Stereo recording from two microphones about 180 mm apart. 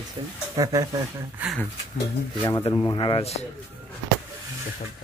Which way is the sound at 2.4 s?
25° left (ahead or behind).